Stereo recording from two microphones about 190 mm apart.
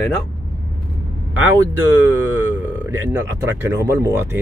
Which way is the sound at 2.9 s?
15° right (ahead or behind).